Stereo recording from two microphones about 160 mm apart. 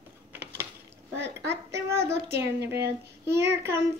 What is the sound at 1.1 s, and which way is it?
Speech, 90° right.